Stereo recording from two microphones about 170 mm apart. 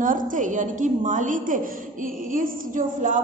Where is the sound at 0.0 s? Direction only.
50° right (ahead or behind).